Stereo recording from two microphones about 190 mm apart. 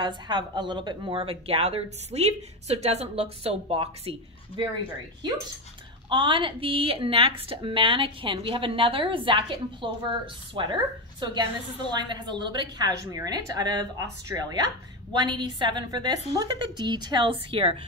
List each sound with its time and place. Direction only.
0.0 s speech: 25° right (ahead or behind)
6.0 s speech: 25° right (ahead or behind)